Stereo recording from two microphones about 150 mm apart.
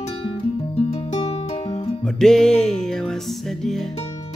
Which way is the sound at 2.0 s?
5° left (ahead or behind).